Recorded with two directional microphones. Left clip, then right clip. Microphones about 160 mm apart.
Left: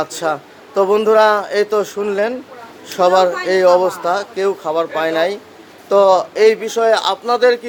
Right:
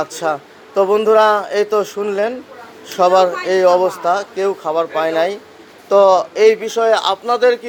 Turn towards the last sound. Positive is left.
turn(degrees=5)  # may be behind; listen again after turning